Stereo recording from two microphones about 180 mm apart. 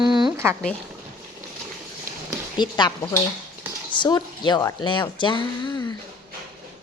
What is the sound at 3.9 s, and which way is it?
A woman's voice, 25° left (ahead or behind).